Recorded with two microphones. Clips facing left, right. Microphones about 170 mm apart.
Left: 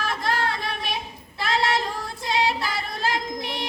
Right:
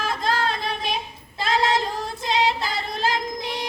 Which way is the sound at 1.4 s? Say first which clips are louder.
Right 2 dB; 20° right (ahead or behind).